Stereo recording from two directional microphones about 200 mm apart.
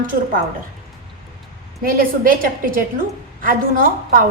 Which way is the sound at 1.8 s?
45° right (ahead or behind).